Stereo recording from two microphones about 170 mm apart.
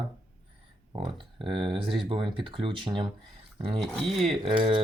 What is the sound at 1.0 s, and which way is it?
Speech, 30° right (ahead or behind).